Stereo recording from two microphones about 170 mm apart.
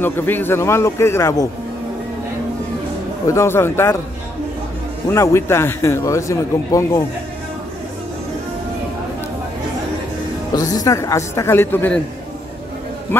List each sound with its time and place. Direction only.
0.0 s a man's voice: 10° left (ahead or behind)
3.3 s a man's voice: 15° left (ahead or behind)
5.0 s a man's voice: 15° left (ahead or behind)
10.5 s a man's voice: 20° left (ahead or behind)